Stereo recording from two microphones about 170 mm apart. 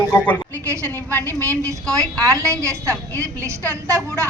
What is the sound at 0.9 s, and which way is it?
Speech, 10° left (ahead or behind).